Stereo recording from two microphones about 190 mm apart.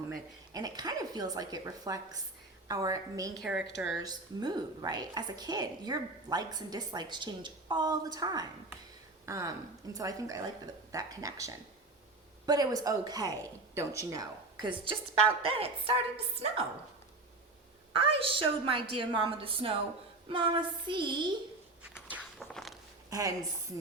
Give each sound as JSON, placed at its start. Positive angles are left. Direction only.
{"t": 0.1, "sound": "a woman's voice", "side_deg": -20}
{"t": 3.4, "sound": "speech", "side_deg": 0}
{"t": 3.9, "sound": "a woman's voice", "side_deg": -20}
{"t": 15.4, "sound": "a woman's voice", "side_deg": -30}
{"t": 17.9, "sound": "a woman's voice", "side_deg": -30}
{"t": 20.8, "sound": "a woman's voice", "side_deg": -25}
{"t": 21.8, "sound": "walk", "side_deg": -5}
{"t": 23.0, "sound": "a woman's voice", "side_deg": -20}